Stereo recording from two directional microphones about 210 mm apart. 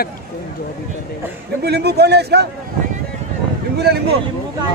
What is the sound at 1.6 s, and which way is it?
Speech, 50° right (ahead or behind).